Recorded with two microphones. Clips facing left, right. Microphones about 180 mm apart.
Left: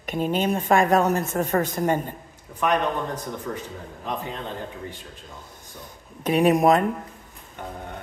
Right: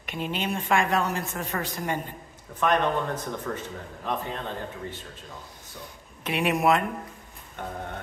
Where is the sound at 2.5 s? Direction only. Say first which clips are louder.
Left 1 dB; 10° left (ahead or behind).